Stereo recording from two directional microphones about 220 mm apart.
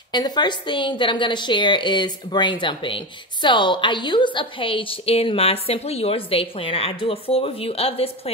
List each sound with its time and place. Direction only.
0.1 s a woman's voice: 20° left (ahead or behind)